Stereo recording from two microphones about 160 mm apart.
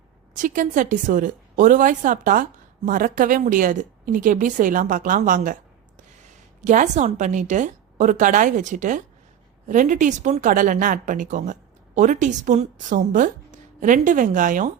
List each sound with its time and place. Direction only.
0.3 s a woman's voice: 55° right (ahead or behind)
6.7 s a woman's voice: 50° right (ahead or behind)